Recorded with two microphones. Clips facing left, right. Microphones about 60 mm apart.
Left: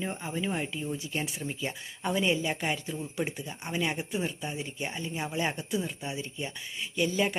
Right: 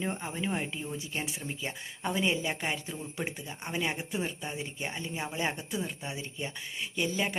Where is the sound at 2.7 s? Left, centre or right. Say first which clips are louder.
Left 3 dB; right.